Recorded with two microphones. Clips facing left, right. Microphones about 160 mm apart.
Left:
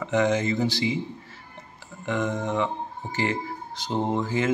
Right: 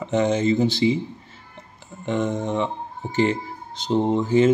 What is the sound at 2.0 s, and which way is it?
Speech, 25° right (ahead or behind).